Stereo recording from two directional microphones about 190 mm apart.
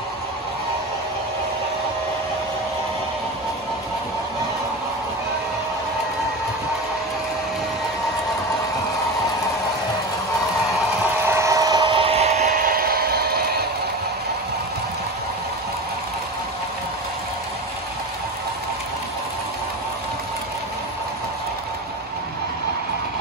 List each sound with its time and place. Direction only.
11.2 s vehicle: 15° right (ahead or behind); by 13.7 s 55° right (ahead or behind)